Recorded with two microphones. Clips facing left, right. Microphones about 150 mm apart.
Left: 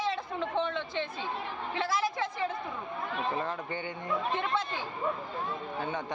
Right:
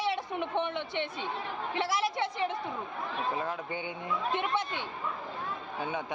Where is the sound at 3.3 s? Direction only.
5° right (ahead or behind).